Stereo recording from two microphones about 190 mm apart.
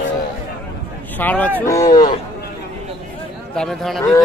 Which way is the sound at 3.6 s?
Centre (ahead or behind).